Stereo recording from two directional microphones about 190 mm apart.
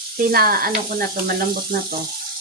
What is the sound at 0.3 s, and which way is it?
Speech, 50° right (ahead or behind).